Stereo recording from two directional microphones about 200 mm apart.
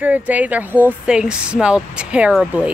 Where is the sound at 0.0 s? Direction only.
10° right (ahead or behind).